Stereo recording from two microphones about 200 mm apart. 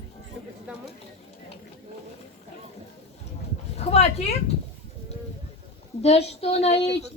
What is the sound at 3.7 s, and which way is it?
Speech, 30° left (ahead or behind).